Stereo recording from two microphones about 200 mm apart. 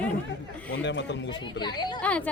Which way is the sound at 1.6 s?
20° left (ahead or behind).